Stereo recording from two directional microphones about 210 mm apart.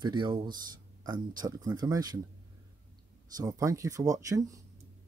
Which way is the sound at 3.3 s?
15° right (ahead or behind).